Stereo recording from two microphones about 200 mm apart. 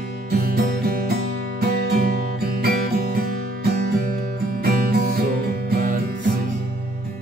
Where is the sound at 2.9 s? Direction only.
50° right (ahead or behind).